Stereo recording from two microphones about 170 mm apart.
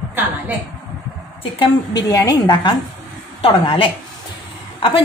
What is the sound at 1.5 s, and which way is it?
A woman's voice, 20° left (ahead or behind).